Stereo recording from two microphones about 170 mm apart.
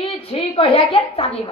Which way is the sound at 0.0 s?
35° left (ahead or behind).